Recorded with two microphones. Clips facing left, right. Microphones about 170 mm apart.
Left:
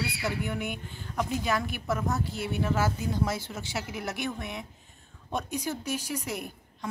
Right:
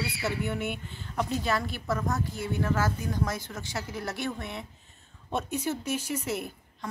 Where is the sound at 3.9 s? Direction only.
20° left (ahead or behind).